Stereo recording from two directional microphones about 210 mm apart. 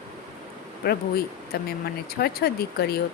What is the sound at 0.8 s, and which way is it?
Speech, 50° left (ahead or behind).